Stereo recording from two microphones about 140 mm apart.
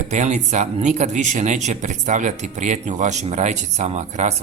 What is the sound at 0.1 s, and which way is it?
Speech, 55° right (ahead or behind).